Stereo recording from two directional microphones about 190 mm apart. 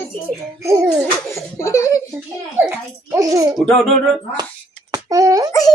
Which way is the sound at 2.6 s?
15° right (ahead or behind).